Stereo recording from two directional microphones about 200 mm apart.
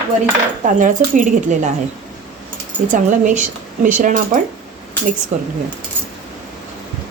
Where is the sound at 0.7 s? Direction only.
40° right (ahead or behind).